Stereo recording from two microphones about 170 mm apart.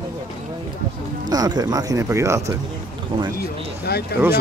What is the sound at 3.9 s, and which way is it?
Speech, 70° left (ahead or behind).